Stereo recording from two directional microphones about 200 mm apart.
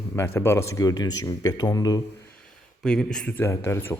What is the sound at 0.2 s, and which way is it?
Speech, 10° left (ahead or behind).